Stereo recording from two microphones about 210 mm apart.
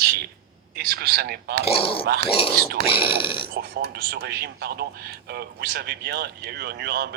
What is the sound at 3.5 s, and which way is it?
A man's voice, 50° right (ahead or behind).